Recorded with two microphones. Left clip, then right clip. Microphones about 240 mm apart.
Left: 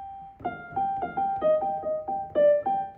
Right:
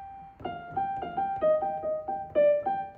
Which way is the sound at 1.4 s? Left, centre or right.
Centre.